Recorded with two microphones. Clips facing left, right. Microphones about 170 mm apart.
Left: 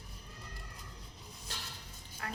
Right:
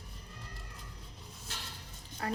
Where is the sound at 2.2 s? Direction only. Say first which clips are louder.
Right 8 dB; 30° right (ahead or behind).